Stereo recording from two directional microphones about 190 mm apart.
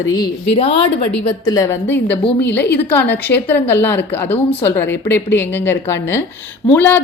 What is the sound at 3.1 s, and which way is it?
A woman's voice, 10° left (ahead or behind).